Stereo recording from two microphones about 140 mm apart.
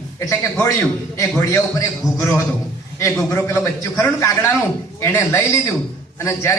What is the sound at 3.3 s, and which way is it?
A man's voice, 15° left (ahead or behind).